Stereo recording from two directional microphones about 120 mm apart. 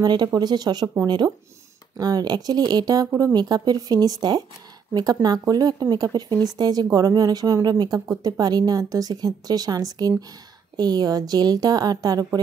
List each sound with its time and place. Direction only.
0.0 s speech: 35° right (ahead or behind)